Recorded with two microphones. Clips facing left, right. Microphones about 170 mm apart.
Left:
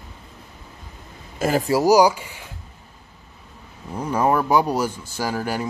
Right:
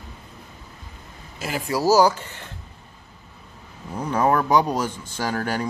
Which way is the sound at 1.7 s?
15° left (ahead or behind).